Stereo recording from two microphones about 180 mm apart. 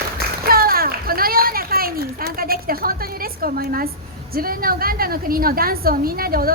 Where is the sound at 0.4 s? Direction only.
55° right (ahead or behind).